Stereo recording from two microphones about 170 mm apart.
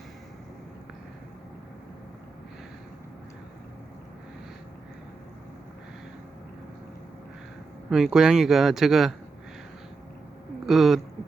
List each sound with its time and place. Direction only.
7.9 s speech: centre (ahead or behind)
10.7 s speech: centre (ahead or behind)